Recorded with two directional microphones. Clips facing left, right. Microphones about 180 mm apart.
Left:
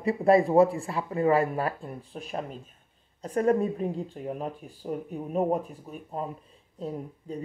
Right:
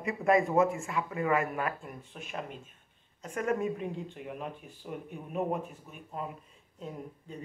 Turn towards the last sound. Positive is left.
turn(degrees=35)  # may be behind; listen again after turning